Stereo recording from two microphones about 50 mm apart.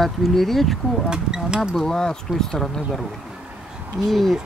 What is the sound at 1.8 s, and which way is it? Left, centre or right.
Speech, centre.